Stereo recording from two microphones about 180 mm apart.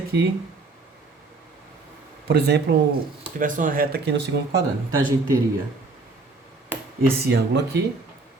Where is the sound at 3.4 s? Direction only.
45° right (ahead or behind); by 4.5 s 65° right (ahead or behind).